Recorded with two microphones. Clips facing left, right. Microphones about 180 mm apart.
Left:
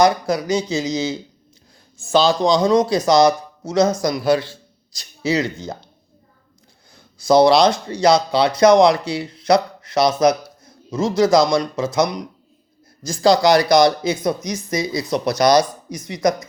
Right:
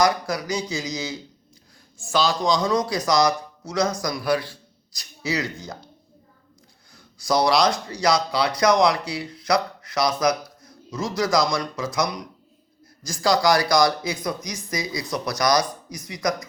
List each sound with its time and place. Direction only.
0.0 s a man's voice: 25° left (ahead or behind)
6.9 s speech: 25° left (ahead or behind)